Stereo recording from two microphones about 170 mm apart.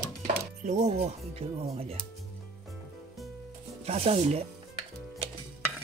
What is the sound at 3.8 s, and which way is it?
Speech, 35° right (ahead or behind).